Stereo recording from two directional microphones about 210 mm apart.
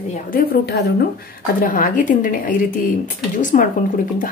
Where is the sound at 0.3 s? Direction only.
45° left (ahead or behind).